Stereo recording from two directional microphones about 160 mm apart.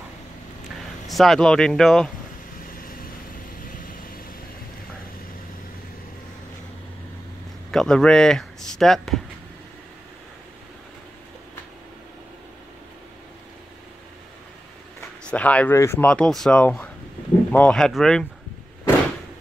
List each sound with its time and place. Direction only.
1.0 s speech: centre (ahead or behind)
2.6 s vehicle: 60° left (ahead or behind)
7.7 s speech: 5° left (ahead or behind)
15.0 s speech: 10° left (ahead or behind)